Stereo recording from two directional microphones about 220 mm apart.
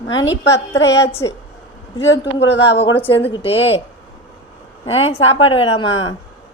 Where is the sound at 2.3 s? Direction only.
55° left (ahead or behind).